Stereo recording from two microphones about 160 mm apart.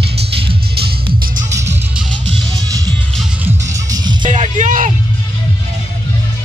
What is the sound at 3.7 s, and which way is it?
Music, 25° right (ahead or behind).